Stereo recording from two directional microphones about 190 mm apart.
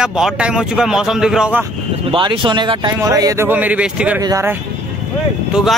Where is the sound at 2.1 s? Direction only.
25° right (ahead or behind); by 4.2 s 5° right (ahead or behind).